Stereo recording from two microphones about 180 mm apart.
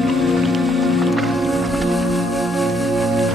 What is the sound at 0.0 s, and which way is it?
Music, centre (ahead or behind).